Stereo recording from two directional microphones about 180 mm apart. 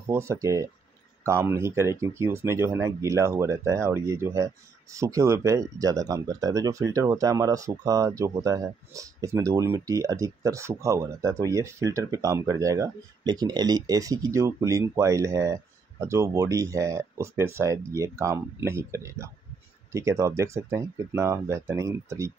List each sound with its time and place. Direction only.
0.1 s speech: 15° right (ahead or behind)